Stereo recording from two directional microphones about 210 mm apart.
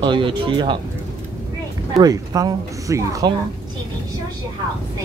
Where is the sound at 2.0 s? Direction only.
15° right (ahead or behind).